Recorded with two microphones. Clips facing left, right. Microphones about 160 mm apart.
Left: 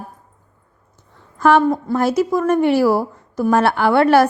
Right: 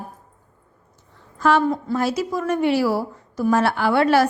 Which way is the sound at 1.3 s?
55° left (ahead or behind).